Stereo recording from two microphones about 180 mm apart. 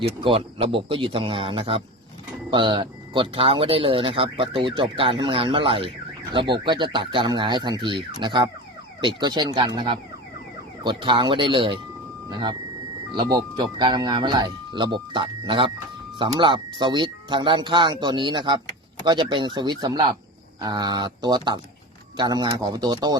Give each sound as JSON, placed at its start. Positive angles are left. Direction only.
{"t": 0.2, "sound": "speech", "side_deg": -30}